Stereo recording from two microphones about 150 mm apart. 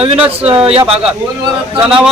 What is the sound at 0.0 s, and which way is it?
Speech, 40° right (ahead or behind).